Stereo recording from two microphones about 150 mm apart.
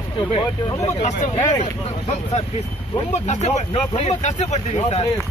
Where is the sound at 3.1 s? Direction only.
50° left (ahead or behind).